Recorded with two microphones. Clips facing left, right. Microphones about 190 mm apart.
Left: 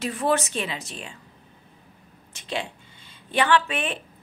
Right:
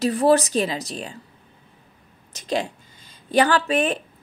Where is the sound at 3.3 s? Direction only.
40° right (ahead or behind).